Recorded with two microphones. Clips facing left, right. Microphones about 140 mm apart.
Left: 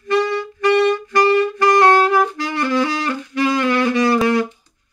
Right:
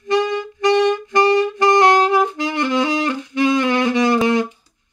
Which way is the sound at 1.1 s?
20° right (ahead or behind).